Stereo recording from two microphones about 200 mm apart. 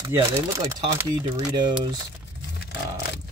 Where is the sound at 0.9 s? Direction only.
20° right (ahead or behind).